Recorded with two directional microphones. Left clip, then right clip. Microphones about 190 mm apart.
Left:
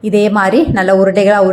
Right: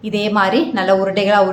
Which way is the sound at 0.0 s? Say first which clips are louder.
Left 5 dB; 30° left (ahead or behind).